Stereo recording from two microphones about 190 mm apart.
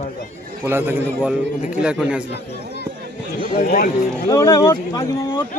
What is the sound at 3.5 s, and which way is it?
Speech, 50° left (ahead or behind).